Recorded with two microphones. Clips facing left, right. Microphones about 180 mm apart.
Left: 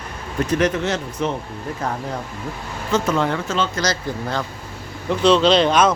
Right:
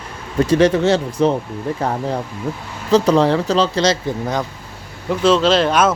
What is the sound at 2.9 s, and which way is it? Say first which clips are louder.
Speech: right 7 dB; 35° right (ahead or behind).